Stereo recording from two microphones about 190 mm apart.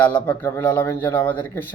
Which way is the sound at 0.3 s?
10° left (ahead or behind).